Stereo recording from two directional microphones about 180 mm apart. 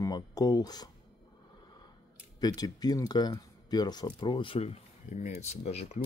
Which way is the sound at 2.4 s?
20° left (ahead or behind).